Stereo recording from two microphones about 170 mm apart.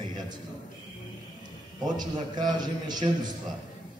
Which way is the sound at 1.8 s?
25° right (ahead or behind).